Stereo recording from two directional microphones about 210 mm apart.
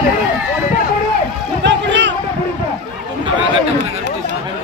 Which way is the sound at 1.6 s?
60° right (ahead or behind).